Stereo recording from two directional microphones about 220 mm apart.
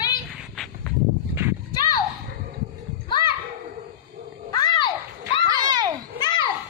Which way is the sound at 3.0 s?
20° left (ahead or behind).